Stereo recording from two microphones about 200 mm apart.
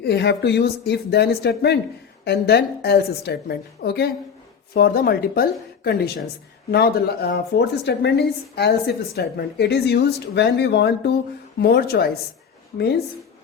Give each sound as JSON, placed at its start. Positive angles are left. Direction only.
{"t": 0.0, "sound": "a woman's voice", "side_deg": 55}